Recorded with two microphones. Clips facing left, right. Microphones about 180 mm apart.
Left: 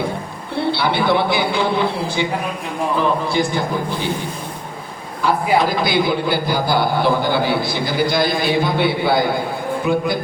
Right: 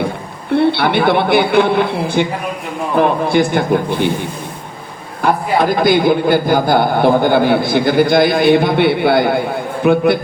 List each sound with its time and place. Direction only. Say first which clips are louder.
0.5 s a man's voice: right 7 dB; 60° right (ahead or behind)
5.2 s a man's voice: right 2 dB; 55° right (ahead or behind)